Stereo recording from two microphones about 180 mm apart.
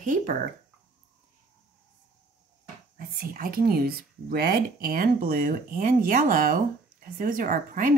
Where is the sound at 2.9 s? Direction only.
50° right (ahead or behind).